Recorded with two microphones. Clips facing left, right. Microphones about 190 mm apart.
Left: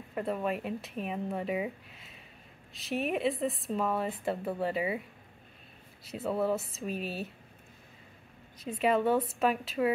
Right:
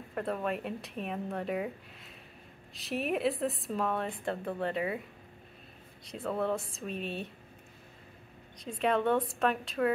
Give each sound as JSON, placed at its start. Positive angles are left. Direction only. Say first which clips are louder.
{"t": 0.1, "sound": "a woman's voice", "louder": "left 1 dB", "side_deg": 0}
{"t": 6.0, "sound": "a woman's voice", "louder": "left 2 dB", "side_deg": 5}
{"t": 8.6, "sound": "a woman's voice", "louder": "left 1 dB", "side_deg": 5}